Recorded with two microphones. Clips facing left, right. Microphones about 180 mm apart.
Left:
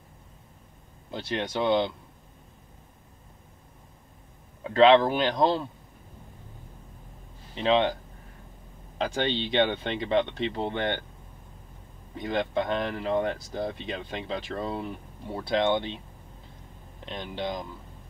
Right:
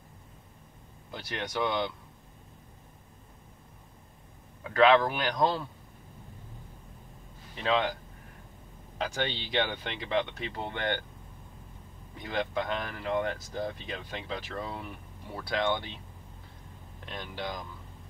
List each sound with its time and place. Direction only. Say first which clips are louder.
1.1 s speech: left 5 dB; 25° left (ahead or behind)
4.6 s speech: left 4 dB; 25° left (ahead or behind)
7.5 s speech: left 5 dB; 25° left (ahead or behind)
9.0 s speech: left 5 dB; 30° left (ahead or behind)
12.2 s speech: left 4 dB; 25° left (ahead or behind)
17.0 s speech: left 5 dB; 20° left (ahead or behind)